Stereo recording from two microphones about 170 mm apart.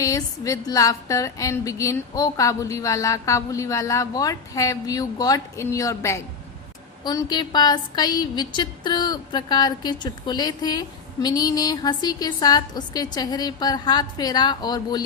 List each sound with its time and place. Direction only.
0.0 s a woman's voice: 20° left (ahead or behind)